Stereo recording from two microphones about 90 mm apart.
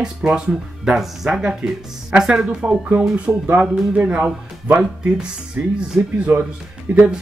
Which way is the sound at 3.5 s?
20° right (ahead or behind).